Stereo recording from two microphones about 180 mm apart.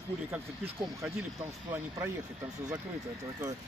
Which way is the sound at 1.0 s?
15° right (ahead or behind).